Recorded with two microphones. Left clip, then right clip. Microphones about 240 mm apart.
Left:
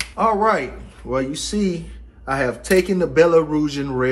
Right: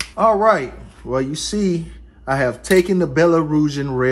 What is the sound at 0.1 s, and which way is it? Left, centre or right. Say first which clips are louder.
A man's voice: right 3 dB; right.